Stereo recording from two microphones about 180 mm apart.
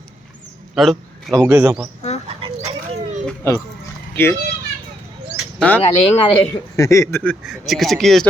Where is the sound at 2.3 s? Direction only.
25° right (ahead or behind).